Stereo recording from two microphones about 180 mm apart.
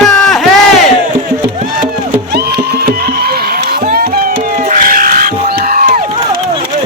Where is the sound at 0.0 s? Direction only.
Centre (ahead or behind).